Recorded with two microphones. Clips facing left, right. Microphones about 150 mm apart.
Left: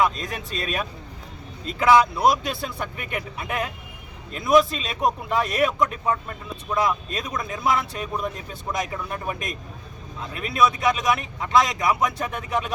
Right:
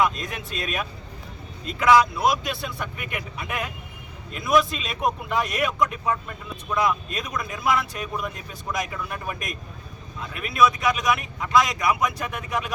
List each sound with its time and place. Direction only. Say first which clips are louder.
0.0 s speech: left 1 dB; 35° left (ahead or behind)